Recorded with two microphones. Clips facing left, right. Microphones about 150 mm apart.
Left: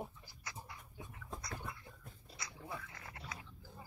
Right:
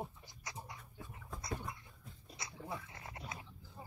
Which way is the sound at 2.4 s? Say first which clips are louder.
Right 2 dB; 25° right (ahead or behind).